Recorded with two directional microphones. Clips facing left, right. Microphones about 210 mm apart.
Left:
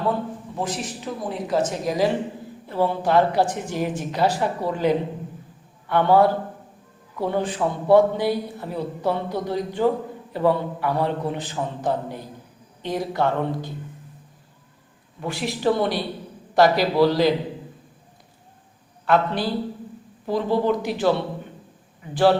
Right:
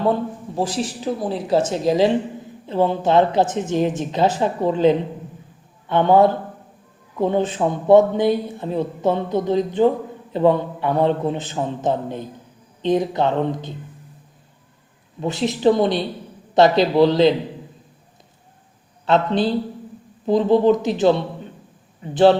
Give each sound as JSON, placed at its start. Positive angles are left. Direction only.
{"t": 0.5, "sound": "speech", "side_deg": -30}
{"t": 15.2, "sound": "speech", "side_deg": -20}
{"t": 19.0, "sound": "speech", "side_deg": -25}